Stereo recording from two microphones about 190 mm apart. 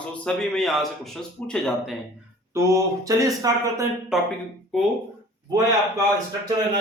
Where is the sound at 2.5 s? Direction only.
15° right (ahead or behind).